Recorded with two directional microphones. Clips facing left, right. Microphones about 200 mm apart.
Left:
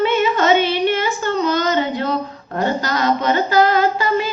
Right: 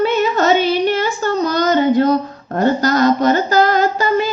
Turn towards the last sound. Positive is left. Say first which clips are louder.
# right 1 dB
turn(degrees=-45)  # may be behind; listen again after turning